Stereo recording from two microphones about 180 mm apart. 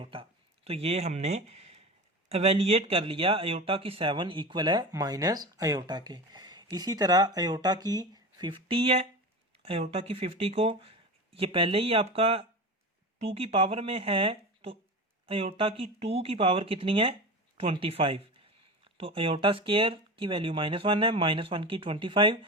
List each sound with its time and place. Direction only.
0.0 s speech: 30° right (ahead or behind)